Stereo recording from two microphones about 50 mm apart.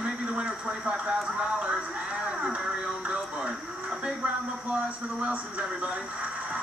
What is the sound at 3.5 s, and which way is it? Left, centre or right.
Speech, centre.